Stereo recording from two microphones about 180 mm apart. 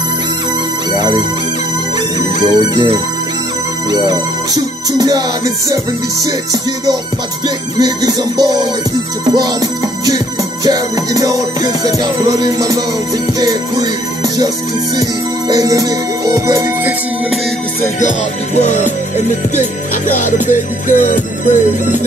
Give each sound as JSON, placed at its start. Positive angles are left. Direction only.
{"t": 0.9, "sound": "music", "side_deg": -25}
{"t": 2.4, "sound": "music", "side_deg": -25}
{"t": 7.4, "sound": "music", "side_deg": -20}
{"t": 15.5, "sound": "music", "side_deg": -20}
{"t": 18.0, "sound": "music", "side_deg": 40}
{"t": 20.2, "sound": "music", "side_deg": 45}